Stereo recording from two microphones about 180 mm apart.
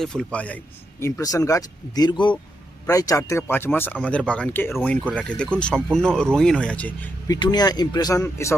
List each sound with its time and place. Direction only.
0.0 s speech: 5° left (ahead or behind)
7.3 s speech: 25° left (ahead or behind)